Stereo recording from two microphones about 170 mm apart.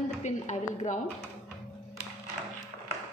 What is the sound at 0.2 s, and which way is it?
Speech, 45° left (ahead or behind).